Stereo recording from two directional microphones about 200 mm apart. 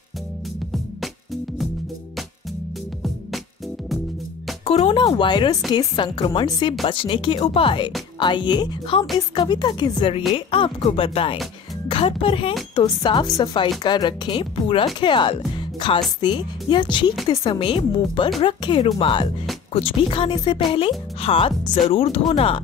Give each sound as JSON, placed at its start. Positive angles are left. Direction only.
{"t": 0.7, "sound": "music", "side_deg": 0}
{"t": 4.6, "sound": "speech", "side_deg": 25}